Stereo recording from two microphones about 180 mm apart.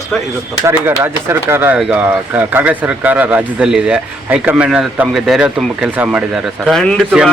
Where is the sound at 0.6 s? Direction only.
15° right (ahead or behind).